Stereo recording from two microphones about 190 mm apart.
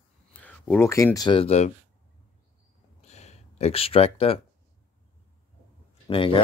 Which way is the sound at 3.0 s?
35° left (ahead or behind).